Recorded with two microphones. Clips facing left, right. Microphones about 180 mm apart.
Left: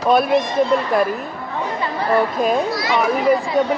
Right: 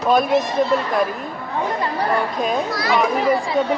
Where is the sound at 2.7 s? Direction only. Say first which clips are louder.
Even; 25° left (ahead or behind).